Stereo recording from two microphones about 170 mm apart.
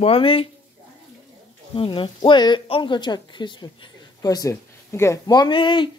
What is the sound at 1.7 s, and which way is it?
A woman's voice, 30° left (ahead or behind).